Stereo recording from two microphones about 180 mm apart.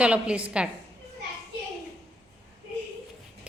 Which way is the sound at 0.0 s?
5° right (ahead or behind).